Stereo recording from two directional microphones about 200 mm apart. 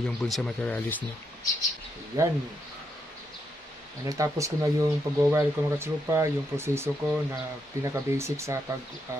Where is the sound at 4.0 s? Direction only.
15° right (ahead or behind).